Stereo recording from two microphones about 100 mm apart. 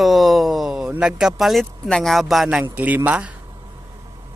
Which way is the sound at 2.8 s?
15° right (ahead or behind).